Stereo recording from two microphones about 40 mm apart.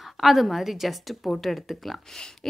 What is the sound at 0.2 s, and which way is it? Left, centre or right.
A woman's voice, centre.